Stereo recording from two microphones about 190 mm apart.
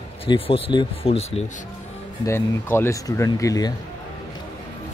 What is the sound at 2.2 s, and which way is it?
Speech, 15° left (ahead or behind).